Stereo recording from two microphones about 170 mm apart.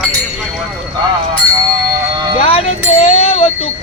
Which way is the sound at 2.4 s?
35° left (ahead or behind).